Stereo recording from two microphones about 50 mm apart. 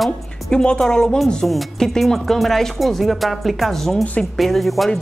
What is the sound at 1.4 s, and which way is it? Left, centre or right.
Speech, centre.